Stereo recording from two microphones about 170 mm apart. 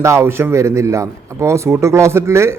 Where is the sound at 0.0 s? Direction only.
15° right (ahead or behind).